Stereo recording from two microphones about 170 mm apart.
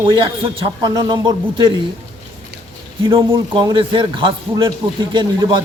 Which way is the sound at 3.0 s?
30° right (ahead or behind).